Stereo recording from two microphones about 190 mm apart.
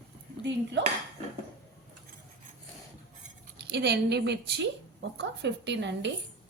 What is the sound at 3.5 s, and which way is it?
A woman's voice, 60° right (ahead or behind).